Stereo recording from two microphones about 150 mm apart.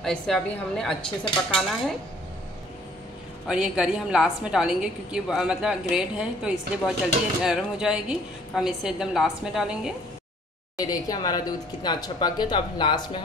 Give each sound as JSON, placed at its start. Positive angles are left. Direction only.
{"t": 0.0, "sound": "a woman's voice", "side_deg": 5}
{"t": 3.4, "sound": "a woman's voice", "side_deg": -5}
{"t": 10.8, "sound": "speech", "side_deg": 25}